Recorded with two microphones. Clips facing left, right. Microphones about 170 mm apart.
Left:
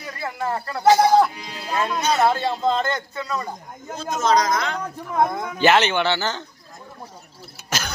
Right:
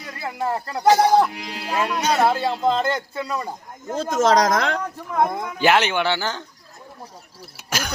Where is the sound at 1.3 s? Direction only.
85° right.